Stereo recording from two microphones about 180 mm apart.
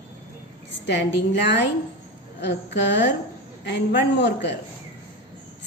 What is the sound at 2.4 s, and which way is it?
A man's voice, 75° left (ahead or behind).